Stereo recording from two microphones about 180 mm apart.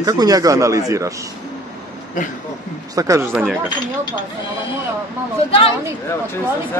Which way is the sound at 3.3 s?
5° right (ahead or behind).